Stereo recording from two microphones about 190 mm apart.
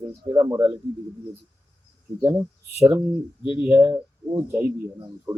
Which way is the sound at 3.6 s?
10° right (ahead or behind).